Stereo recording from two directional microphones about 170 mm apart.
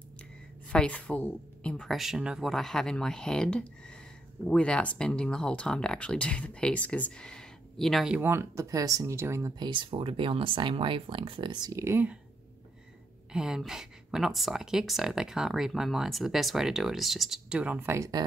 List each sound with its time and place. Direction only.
0.7 s speech: 5° left (ahead or behind); by 12.2 s 10° right (ahead or behind)
13.3 s speech: 5° right (ahead or behind)